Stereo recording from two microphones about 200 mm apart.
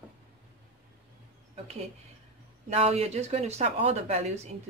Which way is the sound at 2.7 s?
30° right (ahead or behind).